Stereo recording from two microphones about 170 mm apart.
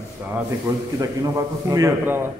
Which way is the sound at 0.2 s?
10° right (ahead or behind).